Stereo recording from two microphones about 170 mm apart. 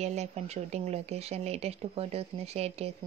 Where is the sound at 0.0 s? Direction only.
40° right (ahead or behind).